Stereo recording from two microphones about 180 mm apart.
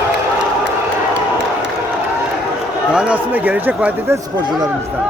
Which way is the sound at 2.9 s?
5° right (ahead or behind).